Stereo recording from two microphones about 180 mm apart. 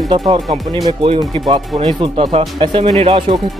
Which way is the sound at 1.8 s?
25° right (ahead or behind).